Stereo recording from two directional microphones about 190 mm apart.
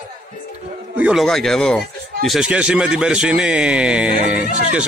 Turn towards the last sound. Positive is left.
turn(degrees=-5)  # may be behind; listen again after turning